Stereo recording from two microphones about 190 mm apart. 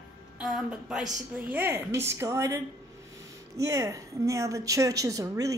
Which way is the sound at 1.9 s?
15° right (ahead or behind).